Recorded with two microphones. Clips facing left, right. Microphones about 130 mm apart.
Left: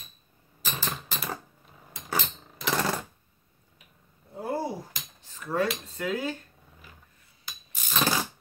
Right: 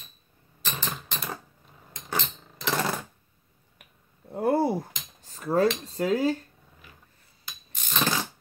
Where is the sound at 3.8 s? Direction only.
65° right (ahead or behind).